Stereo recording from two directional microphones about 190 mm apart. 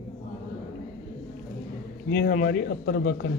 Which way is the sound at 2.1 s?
55° left (ahead or behind).